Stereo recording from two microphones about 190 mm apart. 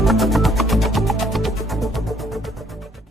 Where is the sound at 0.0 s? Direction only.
Centre (ahead or behind).